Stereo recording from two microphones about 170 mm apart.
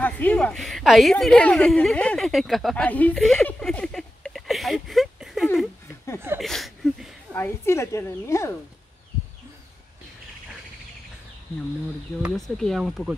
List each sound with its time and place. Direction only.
0.0 s a woman's voice: 10° left (ahead or behind)
6.4 s a sound: centre (ahead or behind)
7.3 s a woman's voice: 15° left (ahead or behind)
12.2 s speech: centre (ahead or behind)